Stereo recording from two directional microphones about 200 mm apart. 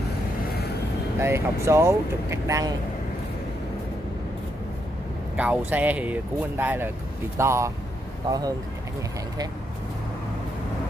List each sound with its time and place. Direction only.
1.2 s speech: 10° right (ahead or behind)
5.3 s speech: 10° right (ahead or behind)